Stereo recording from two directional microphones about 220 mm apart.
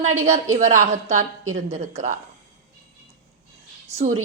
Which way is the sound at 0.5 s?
30° right (ahead or behind).